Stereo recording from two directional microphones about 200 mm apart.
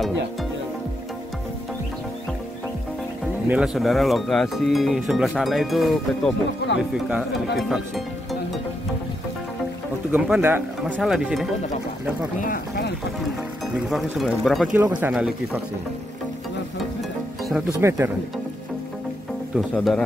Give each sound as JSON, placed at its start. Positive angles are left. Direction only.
{"t": 3.4, "sound": "speech", "side_deg": -5}
{"t": 10.1, "sound": "speech", "side_deg": -5}
{"t": 12.4, "sound": "speech", "side_deg": 45}
{"t": 13.8, "sound": "speech", "side_deg": 0}
{"t": 14.8, "sound": "speech", "side_deg": -10}
{"t": 17.7, "sound": "speech", "side_deg": -15}
{"t": 19.7, "sound": "speech", "side_deg": 0}